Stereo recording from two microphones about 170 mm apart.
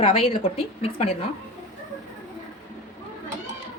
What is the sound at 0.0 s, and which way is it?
A woman's voice, 30° left (ahead or behind).